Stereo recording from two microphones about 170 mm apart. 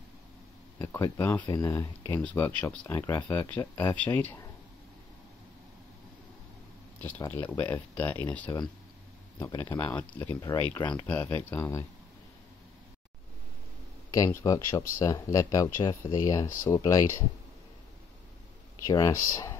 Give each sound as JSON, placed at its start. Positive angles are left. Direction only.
{"t": 0.7, "sound": "speech", "side_deg": 15}
{"t": 7.2, "sound": "speech", "side_deg": 15}
{"t": 14.1, "sound": "speech", "side_deg": 20}
{"t": 18.9, "sound": "speech", "side_deg": 20}